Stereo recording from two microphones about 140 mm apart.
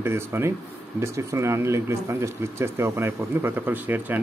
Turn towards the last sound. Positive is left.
turn(degrees=-15)  # may be behind; listen again after turning